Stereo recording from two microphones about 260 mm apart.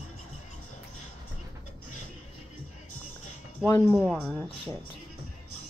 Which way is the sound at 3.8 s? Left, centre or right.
Centre.